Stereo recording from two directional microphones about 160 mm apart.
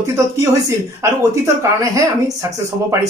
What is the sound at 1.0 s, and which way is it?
Speech, 20° right (ahead or behind).